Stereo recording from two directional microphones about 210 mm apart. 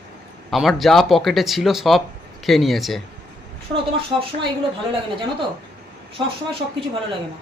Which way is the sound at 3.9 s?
25° right (ahead or behind).